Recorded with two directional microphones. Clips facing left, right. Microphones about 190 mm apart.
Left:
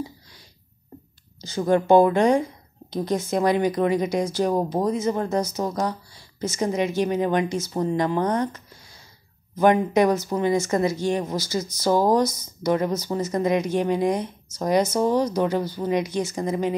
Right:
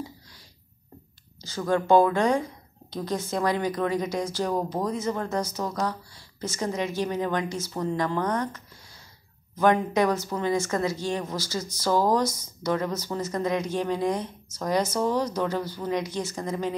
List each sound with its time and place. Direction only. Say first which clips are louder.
1.4 s speech: left 5 dB; 20° left (ahead or behind)